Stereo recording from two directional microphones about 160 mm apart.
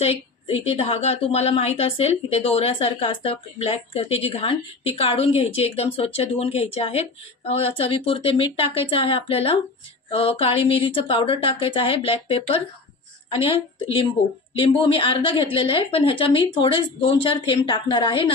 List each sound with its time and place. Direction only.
0.0 s a woman's voice: 40° left (ahead or behind)